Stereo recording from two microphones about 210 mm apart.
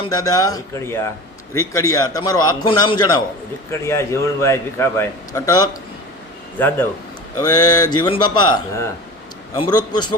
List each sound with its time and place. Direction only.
0.0 s a man's voice: 20° left (ahead or behind)